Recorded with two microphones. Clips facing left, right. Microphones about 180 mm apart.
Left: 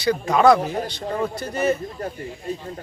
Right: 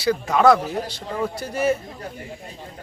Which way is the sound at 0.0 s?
5° right (ahead or behind).